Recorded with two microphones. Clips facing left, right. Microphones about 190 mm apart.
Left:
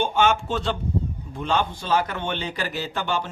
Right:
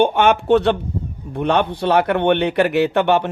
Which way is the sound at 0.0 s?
60° right (ahead or behind).